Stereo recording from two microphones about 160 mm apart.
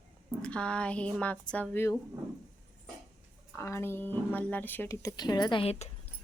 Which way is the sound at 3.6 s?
15° left (ahead or behind).